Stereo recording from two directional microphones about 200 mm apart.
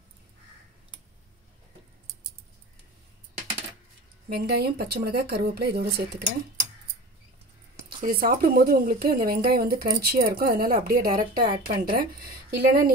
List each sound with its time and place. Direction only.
4.3 s speech: 55° right (ahead or behind)
8.0 s speech: 45° right (ahead or behind)